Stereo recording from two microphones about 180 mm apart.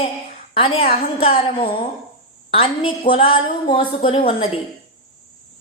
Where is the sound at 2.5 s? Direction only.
30° left (ahead or behind).